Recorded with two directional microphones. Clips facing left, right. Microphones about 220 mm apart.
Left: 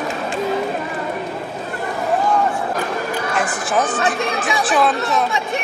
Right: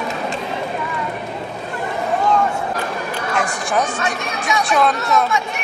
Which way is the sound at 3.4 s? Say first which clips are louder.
Right 1 dB; 5° left (ahead or behind).